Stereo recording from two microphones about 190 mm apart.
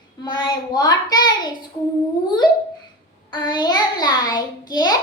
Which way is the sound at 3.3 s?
25° left (ahead or behind).